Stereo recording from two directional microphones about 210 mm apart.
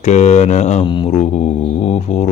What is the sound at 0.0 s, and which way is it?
Mantra, 35° left (ahead or behind).